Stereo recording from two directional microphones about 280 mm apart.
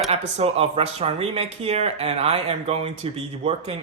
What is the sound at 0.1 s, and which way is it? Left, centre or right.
Speech, right.